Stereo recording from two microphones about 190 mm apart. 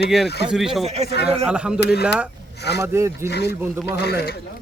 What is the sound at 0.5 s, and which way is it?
Speech, centre (ahead or behind).